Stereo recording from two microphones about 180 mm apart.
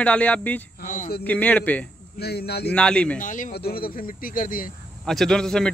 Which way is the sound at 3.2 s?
45° left (ahead or behind).